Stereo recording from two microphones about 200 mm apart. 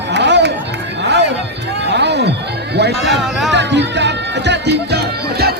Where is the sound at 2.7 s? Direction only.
55° right (ahead or behind).